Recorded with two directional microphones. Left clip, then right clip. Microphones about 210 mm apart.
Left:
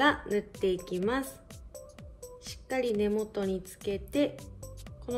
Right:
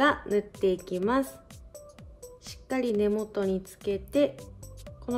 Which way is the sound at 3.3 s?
50° right (ahead or behind).